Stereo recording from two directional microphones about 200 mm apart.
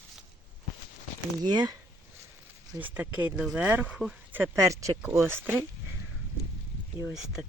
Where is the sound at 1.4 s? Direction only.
20° right (ahead or behind).